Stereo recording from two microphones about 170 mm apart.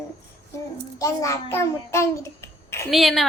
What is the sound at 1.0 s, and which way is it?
A child's voice, 15° left (ahead or behind).